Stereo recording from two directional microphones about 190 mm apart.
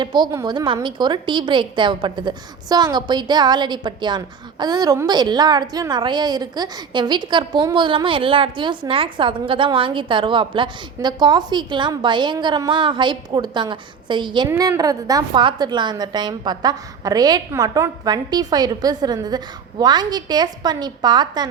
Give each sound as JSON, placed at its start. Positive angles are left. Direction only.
{"t": 0.0, "sound": "a woman's voice", "side_deg": -20}